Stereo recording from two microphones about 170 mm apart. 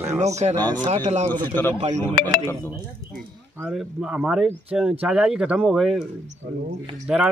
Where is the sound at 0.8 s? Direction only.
40° right (ahead or behind).